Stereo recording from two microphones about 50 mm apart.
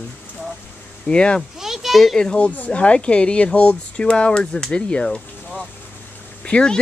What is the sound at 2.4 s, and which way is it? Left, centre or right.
Speech, left.